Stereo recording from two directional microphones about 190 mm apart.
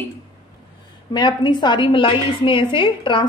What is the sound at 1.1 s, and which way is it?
A woman's voice, 25° left (ahead or behind).